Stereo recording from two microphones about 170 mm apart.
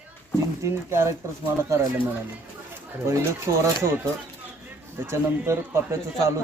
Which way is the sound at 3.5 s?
15° right (ahead or behind).